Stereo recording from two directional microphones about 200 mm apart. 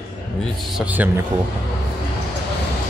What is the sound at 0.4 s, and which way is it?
Speech, 5° right (ahead or behind).